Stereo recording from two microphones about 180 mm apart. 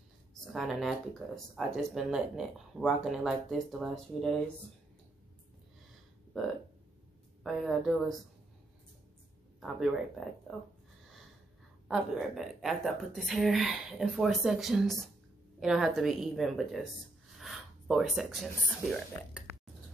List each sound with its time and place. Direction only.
0.5 s speech: centre (ahead or behind)
7.4 s speech: centre (ahead or behind)
9.6 s speech: centre (ahead or behind)
11.9 s speech: centre (ahead or behind)